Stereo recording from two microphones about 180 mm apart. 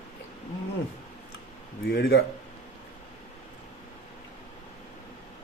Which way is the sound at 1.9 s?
60° left (ahead or behind).